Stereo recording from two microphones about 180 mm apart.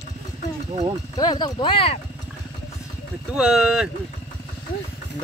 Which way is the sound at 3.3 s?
Centre (ahead or behind).